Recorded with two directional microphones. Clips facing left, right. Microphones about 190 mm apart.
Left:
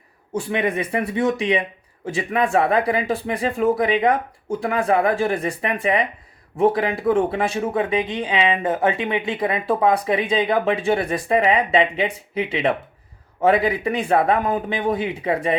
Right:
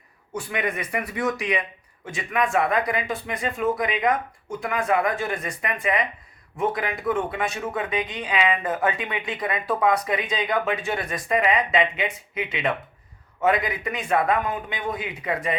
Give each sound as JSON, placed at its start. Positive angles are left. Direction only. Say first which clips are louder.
{"t": 0.3, "sound": "speech", "louder": "left 6 dB", "side_deg": 30}